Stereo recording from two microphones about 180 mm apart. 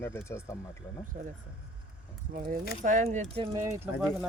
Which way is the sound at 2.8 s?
45° right (ahead or behind).